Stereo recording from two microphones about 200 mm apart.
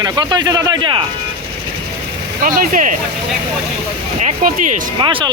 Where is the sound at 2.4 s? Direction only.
40° right (ahead or behind).